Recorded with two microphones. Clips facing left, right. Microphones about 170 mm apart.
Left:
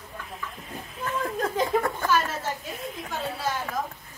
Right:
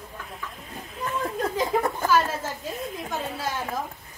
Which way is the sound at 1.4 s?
20° right (ahead or behind).